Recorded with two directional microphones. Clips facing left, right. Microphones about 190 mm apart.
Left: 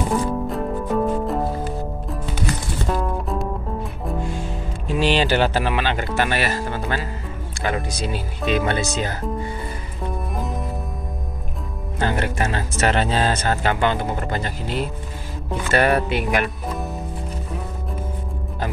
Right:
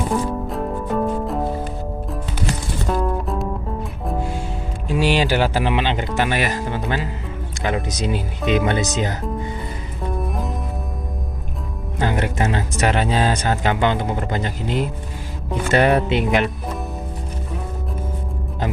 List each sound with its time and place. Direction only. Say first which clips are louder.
0.1 s music: even; centre (ahead or behind)
2.9 s music: right 2 dB; centre (ahead or behind)
4.9 s speech: right 1 dB; 10° right (ahead or behind)
7.6 s music: right 2 dB; 20° right (ahead or behind)
8.5 s speech: right 2 dB; 15° right (ahead or behind)
10.1 s music: right 2 dB; centre (ahead or behind)
12.0 s speech: right 1 dB; 15° right (ahead or behind)
15.7 s music: right 2 dB; 20° right (ahead or behind)